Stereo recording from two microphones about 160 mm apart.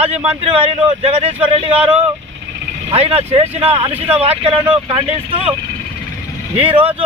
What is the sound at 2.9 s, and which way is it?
Speech, 40° right (ahead or behind).